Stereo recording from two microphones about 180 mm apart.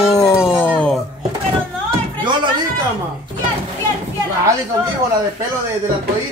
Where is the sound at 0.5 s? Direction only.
10° left (ahead or behind).